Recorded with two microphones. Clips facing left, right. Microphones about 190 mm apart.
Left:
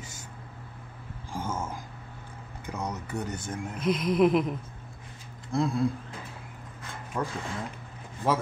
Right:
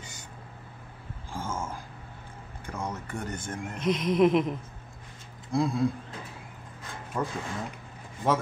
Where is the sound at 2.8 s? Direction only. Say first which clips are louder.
Left 2 dB; 15° left (ahead or behind).